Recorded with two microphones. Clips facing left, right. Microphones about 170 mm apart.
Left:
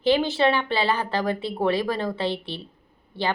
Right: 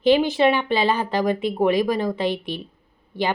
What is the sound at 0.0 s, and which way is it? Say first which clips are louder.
A woman's voice: right 3 dB; 15° right (ahead or behind).